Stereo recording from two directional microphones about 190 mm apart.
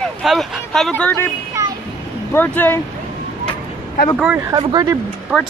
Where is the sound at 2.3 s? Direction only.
10° left (ahead or behind).